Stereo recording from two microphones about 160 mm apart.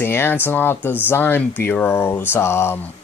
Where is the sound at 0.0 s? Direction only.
15° left (ahead or behind).